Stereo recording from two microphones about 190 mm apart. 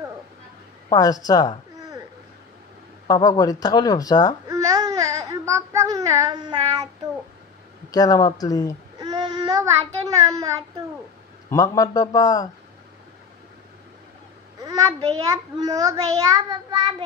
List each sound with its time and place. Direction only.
0.8 s speech: 20° left (ahead or behind)
3.1 s speech: 20° left (ahead or behind)
4.5 s babbling: 20° right (ahead or behind)
7.9 s speech: 20° left (ahead or behind)
9.0 s child singing: 20° right (ahead or behind)
11.5 s speech: 20° left (ahead or behind)
14.6 s a child's voice: 20° right (ahead or behind)